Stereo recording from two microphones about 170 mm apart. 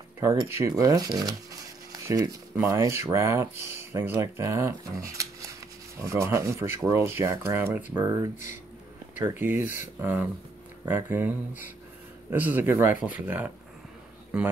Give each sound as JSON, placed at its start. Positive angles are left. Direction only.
{"t": 0.5, "sound": "speech", "side_deg": -15}
{"t": 10.9, "sound": "speech", "side_deg": -10}